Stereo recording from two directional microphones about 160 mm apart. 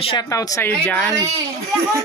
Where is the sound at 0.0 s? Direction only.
30° left (ahead or behind).